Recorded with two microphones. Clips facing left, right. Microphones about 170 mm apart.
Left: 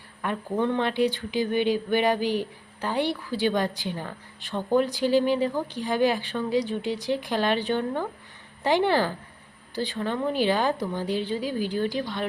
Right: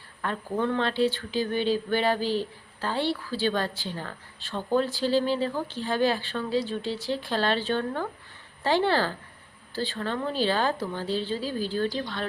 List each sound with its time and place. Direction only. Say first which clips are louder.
0.2 s speech: left 2 dB; 15° left (ahead or behind)